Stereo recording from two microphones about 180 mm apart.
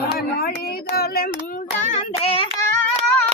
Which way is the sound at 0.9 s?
55° left (ahead or behind).